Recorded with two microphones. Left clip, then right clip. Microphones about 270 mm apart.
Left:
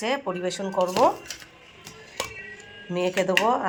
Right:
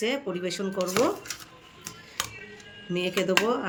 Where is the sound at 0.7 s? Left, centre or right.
Centre.